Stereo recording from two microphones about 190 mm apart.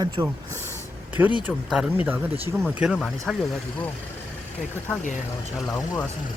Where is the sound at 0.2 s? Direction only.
25° right (ahead or behind).